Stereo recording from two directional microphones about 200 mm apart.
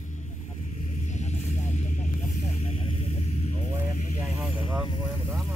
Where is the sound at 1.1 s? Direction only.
35° left (ahead or behind).